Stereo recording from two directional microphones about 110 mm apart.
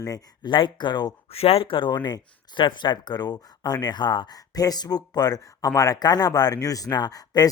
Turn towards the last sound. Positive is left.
turn(degrees=35)  # may be behind; listen again after turning